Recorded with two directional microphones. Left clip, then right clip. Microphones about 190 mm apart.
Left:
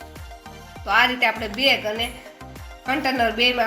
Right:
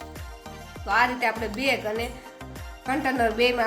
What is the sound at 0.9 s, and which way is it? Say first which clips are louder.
Speech: left 4 dB; 25° left (ahead or behind).